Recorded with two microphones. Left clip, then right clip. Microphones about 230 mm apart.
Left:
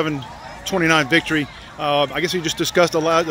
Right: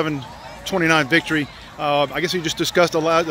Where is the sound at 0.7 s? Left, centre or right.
Centre.